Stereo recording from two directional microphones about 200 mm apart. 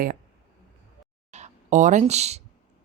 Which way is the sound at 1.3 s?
35° right (ahead or behind).